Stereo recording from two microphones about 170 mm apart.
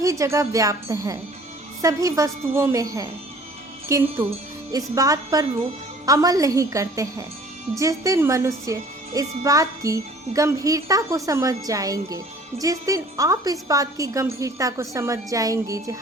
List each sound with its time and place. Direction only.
0.0 s a woman's voice: 20° right (ahead or behind)